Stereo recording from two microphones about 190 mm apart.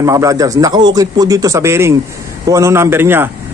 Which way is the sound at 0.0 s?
15° right (ahead or behind).